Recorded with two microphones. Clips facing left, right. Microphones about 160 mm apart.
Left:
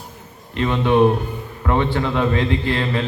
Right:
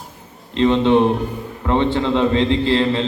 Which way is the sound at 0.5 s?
25° right (ahead or behind).